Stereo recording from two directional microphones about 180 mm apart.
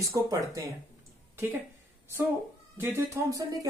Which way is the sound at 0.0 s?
20° right (ahead or behind).